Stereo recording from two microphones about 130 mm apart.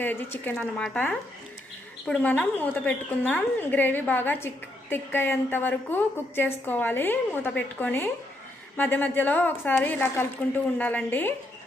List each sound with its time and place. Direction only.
0.0 s a woman's voice: 15° left (ahead or behind)